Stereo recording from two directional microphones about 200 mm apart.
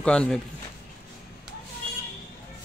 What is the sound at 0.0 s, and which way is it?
Speech, 5° left (ahead or behind).